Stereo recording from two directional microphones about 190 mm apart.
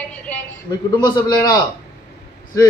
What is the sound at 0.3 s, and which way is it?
Speech, 5° left (ahead or behind).